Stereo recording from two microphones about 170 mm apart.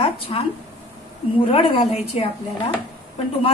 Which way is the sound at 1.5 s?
30° left (ahead or behind).